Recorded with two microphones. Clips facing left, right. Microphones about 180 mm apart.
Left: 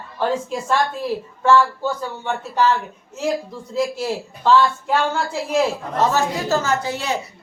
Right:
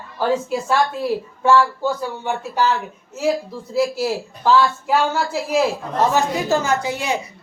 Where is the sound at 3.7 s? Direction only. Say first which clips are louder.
Right 2 dB; 5° right (ahead or behind).